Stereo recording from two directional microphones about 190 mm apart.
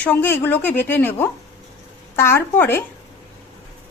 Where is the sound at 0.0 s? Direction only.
10° left (ahead or behind).